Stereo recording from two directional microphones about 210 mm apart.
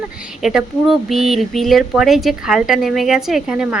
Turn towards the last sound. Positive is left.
turn(degrees=-5)  # may be behind; listen again after turning